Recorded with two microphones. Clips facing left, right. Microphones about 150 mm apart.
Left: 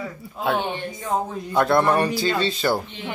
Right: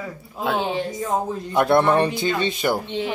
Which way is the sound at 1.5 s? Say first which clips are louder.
Right 1 dB; 20° right (ahead or behind).